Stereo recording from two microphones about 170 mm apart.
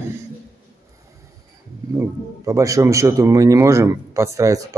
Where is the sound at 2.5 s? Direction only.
20° right (ahead or behind).